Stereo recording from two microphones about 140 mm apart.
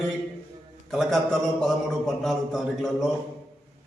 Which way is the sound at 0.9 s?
Centre (ahead or behind).